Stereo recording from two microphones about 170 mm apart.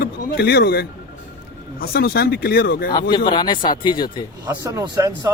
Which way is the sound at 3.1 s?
25° left (ahead or behind).